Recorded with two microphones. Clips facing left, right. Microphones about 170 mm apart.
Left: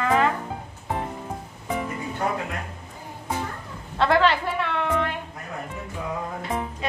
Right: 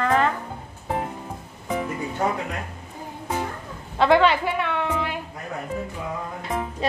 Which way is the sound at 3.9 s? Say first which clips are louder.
Right 2 dB; centre (ahead or behind).